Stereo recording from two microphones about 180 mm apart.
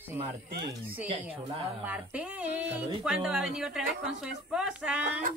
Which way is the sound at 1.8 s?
10° right (ahead or behind).